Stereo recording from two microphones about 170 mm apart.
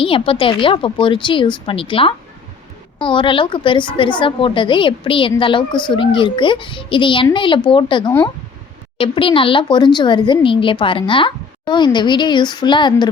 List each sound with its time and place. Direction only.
0.0 s a woman's voice: 30° left (ahead or behind)